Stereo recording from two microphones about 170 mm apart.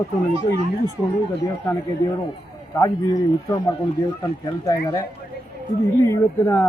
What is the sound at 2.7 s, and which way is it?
A man's voice, 20° left (ahead or behind).